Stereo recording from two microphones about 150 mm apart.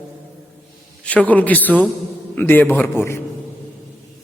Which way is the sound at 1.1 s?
10° left (ahead or behind).